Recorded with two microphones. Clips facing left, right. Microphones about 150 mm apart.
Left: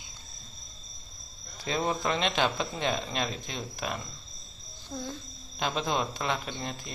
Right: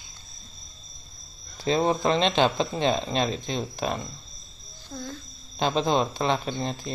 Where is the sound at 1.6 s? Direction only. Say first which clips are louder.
Right 7 dB; 30° right (ahead or behind).